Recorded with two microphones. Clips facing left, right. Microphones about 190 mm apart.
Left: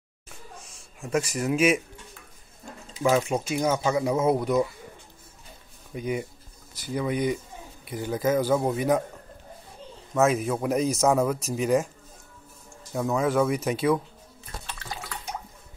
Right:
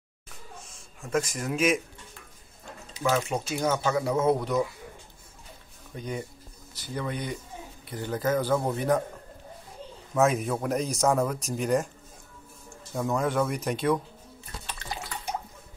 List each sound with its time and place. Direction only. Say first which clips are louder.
1.1 s speech: left 3 dB; 5° left (ahead or behind)
3.0 s speech: left 4 dB; 20° left (ahead or behind)
5.9 s speech: left 5 dB; 10° left (ahead or behind)
10.1 s speech: left 1 dB; centre (ahead or behind)
12.9 s speech: left 3 dB; centre (ahead or behind)